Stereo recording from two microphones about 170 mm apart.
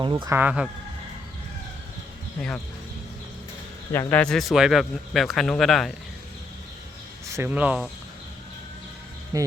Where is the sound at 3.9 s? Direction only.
10° left (ahead or behind).